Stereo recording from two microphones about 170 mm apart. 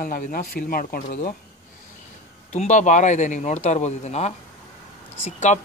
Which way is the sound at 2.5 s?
45° left (ahead or behind).